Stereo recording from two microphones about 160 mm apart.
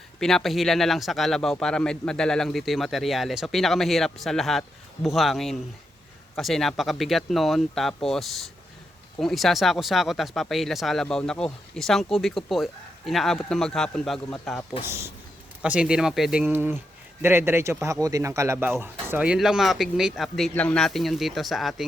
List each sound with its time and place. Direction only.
0.2 s speech: centre (ahead or behind)
14.8 s speech: 15° right (ahead or behind); by 21.8 s centre (ahead or behind)